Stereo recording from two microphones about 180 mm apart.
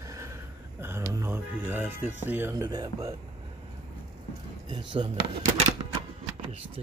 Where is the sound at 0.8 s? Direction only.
15° right (ahead or behind).